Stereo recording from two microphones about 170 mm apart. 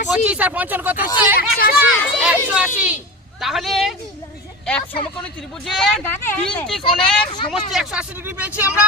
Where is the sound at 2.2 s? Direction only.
5° right (ahead or behind).